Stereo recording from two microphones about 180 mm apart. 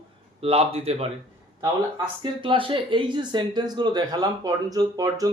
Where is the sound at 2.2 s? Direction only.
30° right (ahead or behind).